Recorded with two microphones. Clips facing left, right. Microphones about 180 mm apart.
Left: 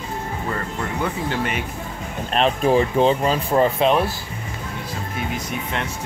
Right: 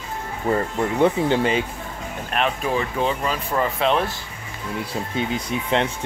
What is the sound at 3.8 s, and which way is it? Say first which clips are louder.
Speech: left 3 dB; 15° left (ahead or behind).